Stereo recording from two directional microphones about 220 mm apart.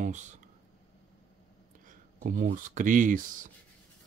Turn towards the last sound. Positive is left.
turn(degrees=-35)  # may be behind; listen again after turning